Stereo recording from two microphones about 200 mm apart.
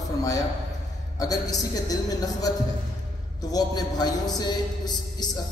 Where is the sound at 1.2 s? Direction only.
20° left (ahead or behind).